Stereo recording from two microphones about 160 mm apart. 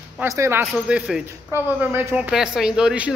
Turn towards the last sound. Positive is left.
turn(degrees=-5)  # may be behind; listen again after turning